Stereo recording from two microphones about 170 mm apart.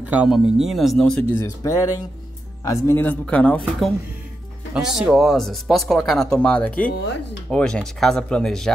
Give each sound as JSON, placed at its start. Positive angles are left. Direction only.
{"t": 0.0, "sound": "speech", "side_deg": -5}
{"t": 1.4, "sound": "speech", "side_deg": 20}
{"t": 4.7, "sound": "speech", "side_deg": -5}